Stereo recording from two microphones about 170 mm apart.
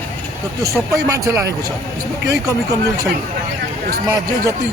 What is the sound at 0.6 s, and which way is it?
Speech, 20° right (ahead or behind).